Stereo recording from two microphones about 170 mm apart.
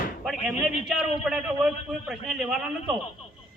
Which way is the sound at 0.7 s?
35° left (ahead or behind).